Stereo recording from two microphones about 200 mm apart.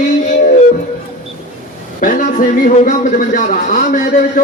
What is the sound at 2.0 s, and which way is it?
A man's voice, 40° left (ahead or behind).